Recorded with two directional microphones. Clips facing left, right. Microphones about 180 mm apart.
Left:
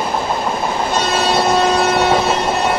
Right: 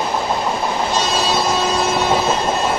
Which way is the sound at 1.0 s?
55° left (ahead or behind).